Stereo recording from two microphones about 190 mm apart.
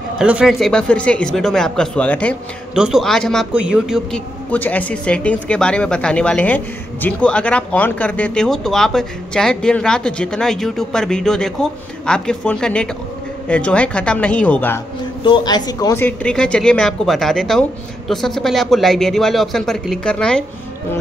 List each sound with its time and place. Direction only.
0.2 s speech: 5° right (ahead or behind)
4.5 s speech: 10° left (ahead or behind)
15.2 s speech: 25° left (ahead or behind); by 20.4 s 5° left (ahead or behind)